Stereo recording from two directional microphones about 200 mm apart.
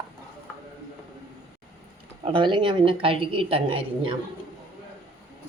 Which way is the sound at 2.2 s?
25° right (ahead or behind).